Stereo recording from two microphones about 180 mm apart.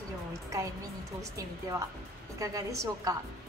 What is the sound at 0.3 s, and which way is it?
Music, 15° right (ahead or behind).